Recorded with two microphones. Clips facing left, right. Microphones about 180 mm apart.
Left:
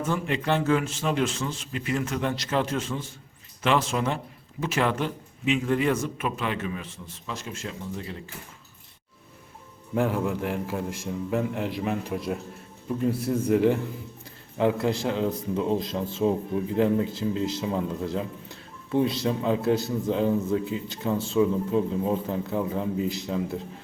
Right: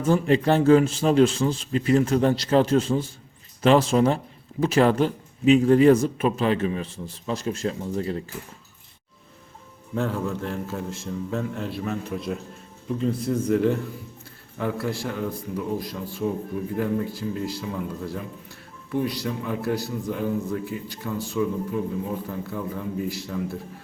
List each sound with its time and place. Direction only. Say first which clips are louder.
0.1 s a man's voice: right 8 dB; 35° right (ahead or behind)
9.9 s a man's voice: left 1 dB; 15° left (ahead or behind)